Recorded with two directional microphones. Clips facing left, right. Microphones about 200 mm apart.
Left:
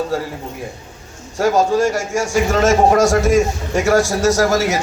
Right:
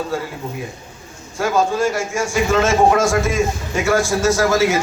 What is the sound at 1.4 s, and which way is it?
A man's voice, 40° left (ahead or behind).